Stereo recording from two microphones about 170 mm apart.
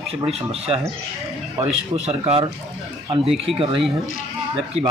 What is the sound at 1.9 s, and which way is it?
Speech, 40° right (ahead or behind).